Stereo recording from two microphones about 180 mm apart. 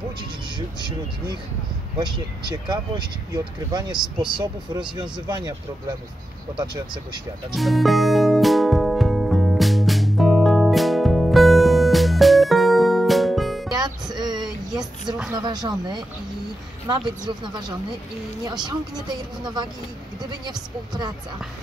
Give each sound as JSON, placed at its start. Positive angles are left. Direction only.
{"t": 0.6, "sound": "speech", "side_deg": -25}
{"t": 7.5, "sound": "music", "side_deg": 0}
{"t": 13.7, "sound": "music", "side_deg": -20}
{"t": 14.1, "sound": "a sound", "side_deg": -25}
{"t": 15.3, "sound": "speech", "side_deg": -25}